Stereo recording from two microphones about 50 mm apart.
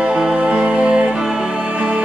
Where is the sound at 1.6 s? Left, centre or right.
Right.